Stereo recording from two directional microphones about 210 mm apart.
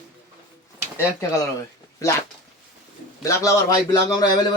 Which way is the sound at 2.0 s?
15° left (ahead or behind).